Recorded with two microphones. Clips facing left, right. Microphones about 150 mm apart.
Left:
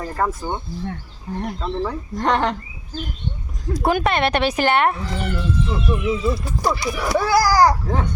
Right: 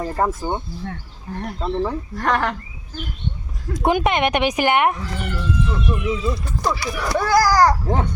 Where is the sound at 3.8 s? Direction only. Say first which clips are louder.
Right 1 dB; 20° right (ahead or behind).